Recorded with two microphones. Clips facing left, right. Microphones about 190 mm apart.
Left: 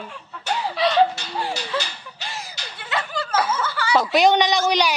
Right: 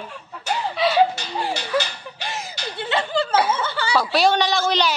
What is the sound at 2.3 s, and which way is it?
Snicker, 25° right (ahead or behind).